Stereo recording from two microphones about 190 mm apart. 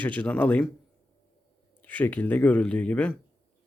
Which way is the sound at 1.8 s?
10° left (ahead or behind).